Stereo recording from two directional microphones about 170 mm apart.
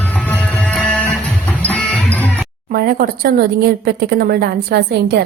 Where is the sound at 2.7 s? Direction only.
60° right (ahead or behind).